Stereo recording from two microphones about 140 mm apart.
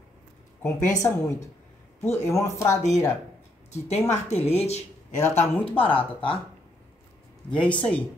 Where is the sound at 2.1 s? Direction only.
20° left (ahead or behind).